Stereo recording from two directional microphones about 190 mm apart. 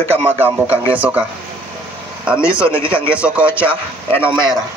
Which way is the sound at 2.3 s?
5° right (ahead or behind).